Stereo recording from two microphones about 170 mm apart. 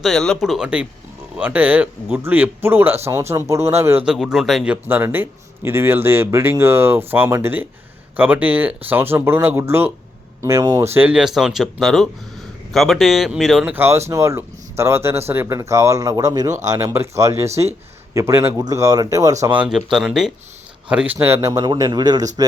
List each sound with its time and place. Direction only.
0.0 s speech: centre (ahead or behind); by 19.5 s 20° right (ahead or behind)
19.5 s speech: 5° right (ahead or behind); by 22.3 s 25° right (ahead or behind)